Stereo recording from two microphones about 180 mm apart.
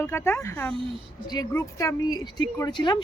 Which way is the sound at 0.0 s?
15° left (ahead or behind).